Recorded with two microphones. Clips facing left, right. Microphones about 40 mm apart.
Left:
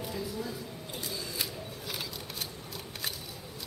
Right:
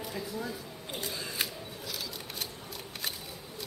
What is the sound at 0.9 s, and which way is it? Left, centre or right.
Single-lens reflex camera, right.